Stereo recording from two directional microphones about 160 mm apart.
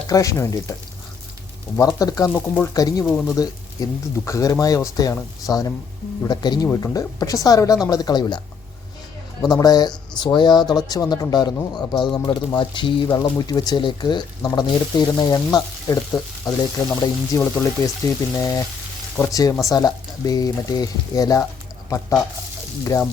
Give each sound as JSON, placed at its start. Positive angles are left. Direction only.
{"t": 0.1, "sound": "speech", "side_deg": 20}
{"t": 9.5, "sound": "speech", "side_deg": 25}
{"t": 22.8, "sound": "speech", "side_deg": 20}